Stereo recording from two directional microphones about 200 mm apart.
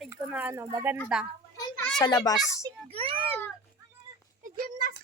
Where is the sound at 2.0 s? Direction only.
20° left (ahead or behind).